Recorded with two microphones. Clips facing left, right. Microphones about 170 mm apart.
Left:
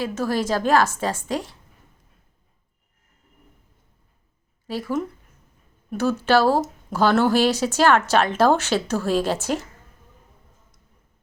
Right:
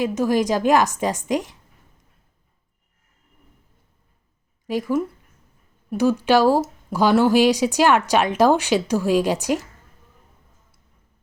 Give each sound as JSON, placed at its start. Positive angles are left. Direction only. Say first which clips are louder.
{"t": 0.0, "sound": "speech", "louder": "right 4 dB", "side_deg": -15}
{"t": 4.6, "sound": "speech", "louder": "right 4 dB", "side_deg": -15}